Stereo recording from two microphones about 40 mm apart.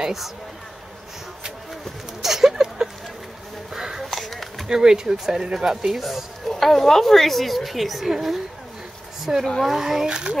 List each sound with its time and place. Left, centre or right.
0.0 s a woman's voice: centre
2.2 s a sound: centre
4.0 s a sound: centre
4.6 s speech: centre
6.4 s a woman's voice: centre
9.3 s speech: right
9.8 s speech: centre
10.0 s speech: right